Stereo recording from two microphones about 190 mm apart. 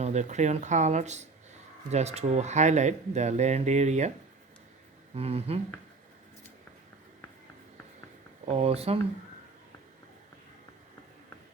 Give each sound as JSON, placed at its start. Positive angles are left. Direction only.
{"t": 0.0, "sound": "speech", "side_deg": -35}
{"t": 5.1, "sound": "speech", "side_deg": -35}
{"t": 8.4, "sound": "speech", "side_deg": -35}